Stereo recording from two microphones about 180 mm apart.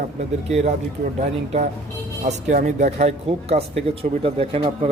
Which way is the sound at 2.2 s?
40° right (ahead or behind).